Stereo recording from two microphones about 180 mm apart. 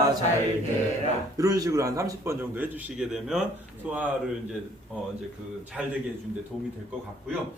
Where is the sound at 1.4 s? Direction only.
20° right (ahead or behind); by 3.4 s 5° right (ahead or behind).